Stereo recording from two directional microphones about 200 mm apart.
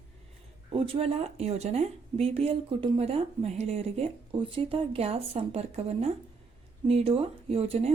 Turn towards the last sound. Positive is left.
turn(degrees=-30)  # may be behind; listen again after turning